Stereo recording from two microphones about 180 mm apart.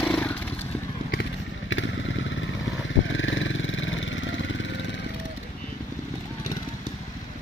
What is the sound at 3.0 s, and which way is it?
Vehicle, 90° left.